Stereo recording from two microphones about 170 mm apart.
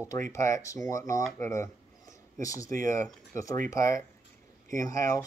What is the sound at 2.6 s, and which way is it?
Speech, 50° right (ahead or behind).